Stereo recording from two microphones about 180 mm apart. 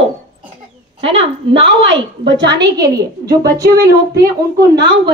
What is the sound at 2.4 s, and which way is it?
Speech, 70° right (ahead or behind).